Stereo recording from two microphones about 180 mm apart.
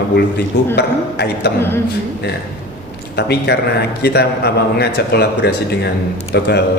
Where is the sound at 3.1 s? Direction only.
65° left (ahead or behind).